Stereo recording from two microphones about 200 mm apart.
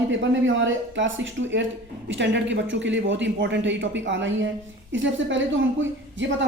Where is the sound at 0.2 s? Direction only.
70° right (ahead or behind).